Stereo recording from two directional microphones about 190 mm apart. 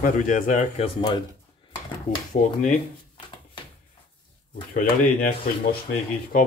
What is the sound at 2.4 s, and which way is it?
Speech, 45° left (ahead or behind).